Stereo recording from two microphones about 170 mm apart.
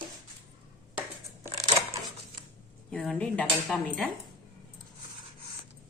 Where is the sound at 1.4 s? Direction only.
35° right (ahead or behind).